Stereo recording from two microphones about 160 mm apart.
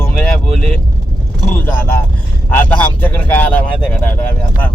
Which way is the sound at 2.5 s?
10° left (ahead or behind).